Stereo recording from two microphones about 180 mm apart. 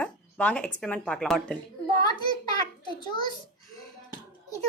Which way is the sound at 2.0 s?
25° left (ahead or behind).